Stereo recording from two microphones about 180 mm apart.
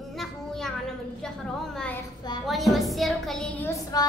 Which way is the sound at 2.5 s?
Centre (ahead or behind).